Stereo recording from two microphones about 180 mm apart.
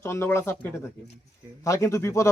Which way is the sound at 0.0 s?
15° left (ahead or behind).